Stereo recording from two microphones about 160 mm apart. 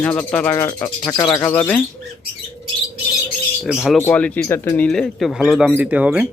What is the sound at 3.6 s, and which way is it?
Speech, centre (ahead or behind).